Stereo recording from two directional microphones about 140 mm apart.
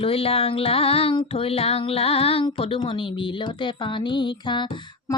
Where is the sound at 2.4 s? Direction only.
40° left (ahead or behind).